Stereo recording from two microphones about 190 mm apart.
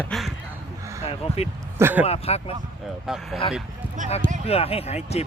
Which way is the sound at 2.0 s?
30° left (ahead or behind).